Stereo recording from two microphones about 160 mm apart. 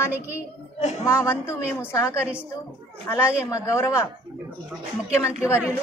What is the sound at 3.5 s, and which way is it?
Speech, 20° left (ahead or behind).